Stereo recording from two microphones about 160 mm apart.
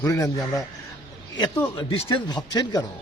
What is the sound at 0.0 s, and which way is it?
A man's voice, 20° left (ahead or behind).